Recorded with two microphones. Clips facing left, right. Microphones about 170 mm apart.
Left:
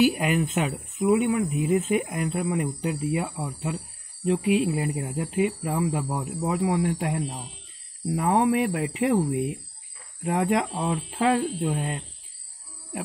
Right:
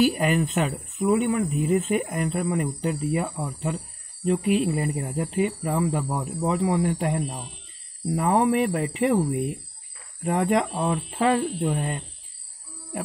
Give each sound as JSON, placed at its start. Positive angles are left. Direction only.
{"t": 0.0, "sound": "speech", "side_deg": 5}